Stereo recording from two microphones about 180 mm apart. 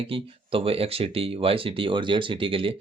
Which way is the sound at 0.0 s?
30° right (ahead or behind).